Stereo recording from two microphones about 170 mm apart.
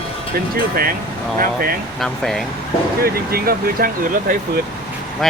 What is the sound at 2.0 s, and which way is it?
Speech, centre (ahead or behind).